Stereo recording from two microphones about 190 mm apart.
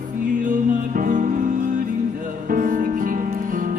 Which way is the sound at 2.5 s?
50° right (ahead or behind).